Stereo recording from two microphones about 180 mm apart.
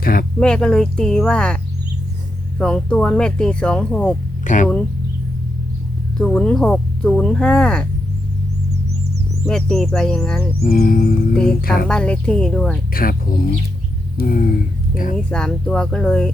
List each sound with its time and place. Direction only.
0.0 s a sound: 55° left (ahead or behind)
0.3 s speech: 5° left (ahead or behind)
2.6 s speech: 5° left (ahead or behind)
4.4 s speech: 45° left (ahead or behind)
6.1 s speech: 5° left (ahead or behind)
9.5 s speech: 5° left (ahead or behind)
10.6 s music: 50° left (ahead or behind)
11.6 s a sound: 55° left (ahead or behind)
11.9 s speech: 5° left (ahead or behind)
12.9 s speech: 55° left (ahead or behind)
14.2 s a sound: 55° left (ahead or behind)
15.1 s speech: 5° left (ahead or behind)